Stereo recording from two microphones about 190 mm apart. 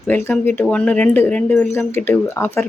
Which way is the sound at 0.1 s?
10° left (ahead or behind).